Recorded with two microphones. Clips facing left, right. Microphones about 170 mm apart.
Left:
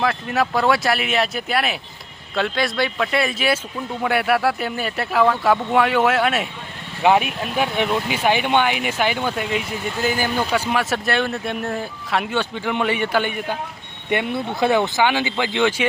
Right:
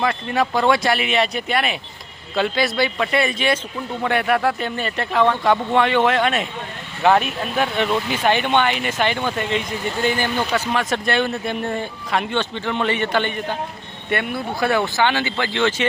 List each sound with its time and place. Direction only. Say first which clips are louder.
0.0 s speech: even; centre (ahead or behind)
14.1 s speech: left 1 dB; 20° left (ahead or behind)